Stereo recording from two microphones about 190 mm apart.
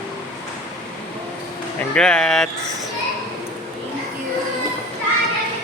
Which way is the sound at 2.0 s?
5° left (ahead or behind).